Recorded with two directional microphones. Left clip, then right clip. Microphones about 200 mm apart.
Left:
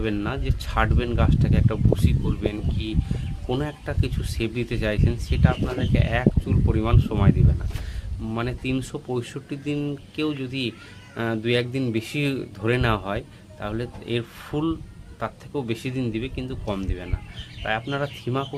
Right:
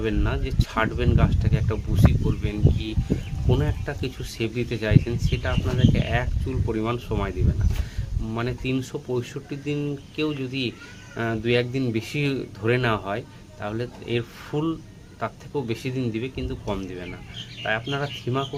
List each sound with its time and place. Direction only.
0.0 s speech: 20° left (ahead or behind)